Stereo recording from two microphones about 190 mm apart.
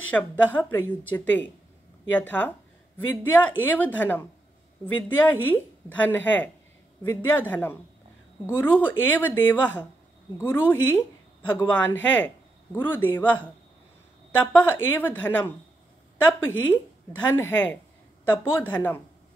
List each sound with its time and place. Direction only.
0.1 s speech: 10° left (ahead or behind)
16.4 s a woman's voice: 90° left
17.2 s speech: 10° left (ahead or behind)